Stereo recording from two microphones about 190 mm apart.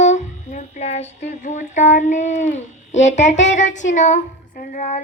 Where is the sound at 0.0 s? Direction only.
40° left (ahead or behind).